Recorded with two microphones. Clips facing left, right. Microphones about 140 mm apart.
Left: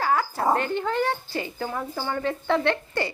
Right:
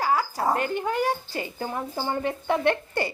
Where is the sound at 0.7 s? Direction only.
10° right (ahead or behind).